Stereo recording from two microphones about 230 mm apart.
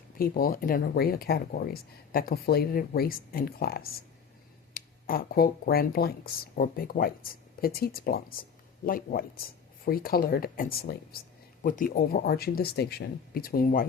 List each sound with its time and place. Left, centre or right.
0.2 s speech: left